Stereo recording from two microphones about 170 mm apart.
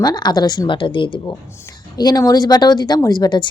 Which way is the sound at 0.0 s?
25° left (ahead or behind).